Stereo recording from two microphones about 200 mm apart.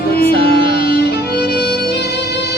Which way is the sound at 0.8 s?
50° left (ahead or behind).